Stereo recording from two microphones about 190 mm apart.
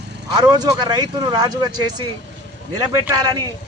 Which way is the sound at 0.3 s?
20° right (ahead or behind).